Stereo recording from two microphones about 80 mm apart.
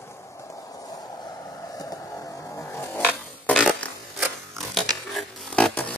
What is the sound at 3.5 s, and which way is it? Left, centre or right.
Fart, centre.